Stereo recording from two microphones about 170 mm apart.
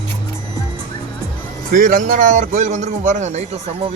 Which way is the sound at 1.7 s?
50° right (ahead or behind).